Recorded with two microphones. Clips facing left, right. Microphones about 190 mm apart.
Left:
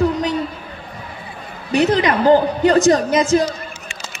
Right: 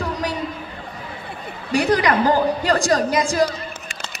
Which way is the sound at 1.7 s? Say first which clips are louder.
Left 2 dB; 20° left (ahead or behind).